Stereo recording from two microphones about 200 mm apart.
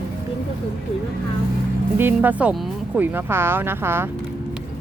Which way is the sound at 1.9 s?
10° right (ahead or behind).